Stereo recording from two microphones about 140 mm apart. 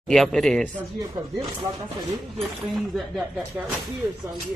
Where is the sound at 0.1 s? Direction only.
Centre (ahead or behind).